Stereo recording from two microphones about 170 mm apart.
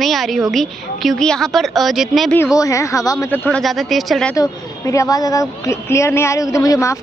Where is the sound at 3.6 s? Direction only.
Centre (ahead or behind).